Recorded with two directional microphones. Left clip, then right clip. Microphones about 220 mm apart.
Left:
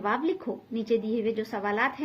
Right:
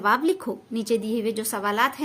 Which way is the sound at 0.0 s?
55° right (ahead or behind).